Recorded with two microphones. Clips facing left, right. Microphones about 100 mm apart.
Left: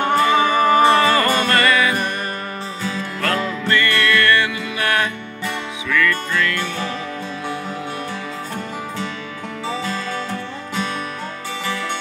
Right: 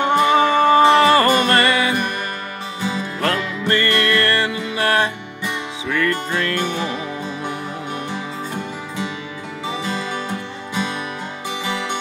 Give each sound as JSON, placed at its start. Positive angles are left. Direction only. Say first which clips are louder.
{"t": 0.0, "sound": "music", "louder": "right 1 dB", "side_deg": -20}
{"t": 9.7, "sound": "music", "louder": "even", "side_deg": -15}
{"t": 11.6, "sound": "music", "louder": "even", "side_deg": -15}